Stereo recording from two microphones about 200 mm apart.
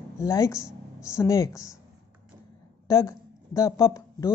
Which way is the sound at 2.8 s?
15° left (ahead or behind).